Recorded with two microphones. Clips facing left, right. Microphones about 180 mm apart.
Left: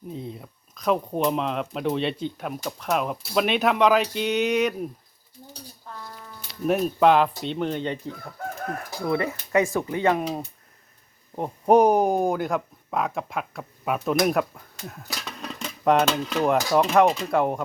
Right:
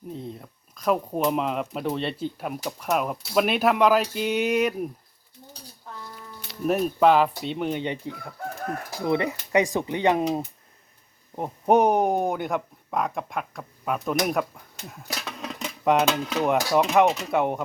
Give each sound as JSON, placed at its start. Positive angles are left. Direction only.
{"t": 0.1, "sound": "speech", "side_deg": 0}
{"t": 6.7, "sound": "speech", "side_deg": -5}
{"t": 11.3, "sound": "speech", "side_deg": -5}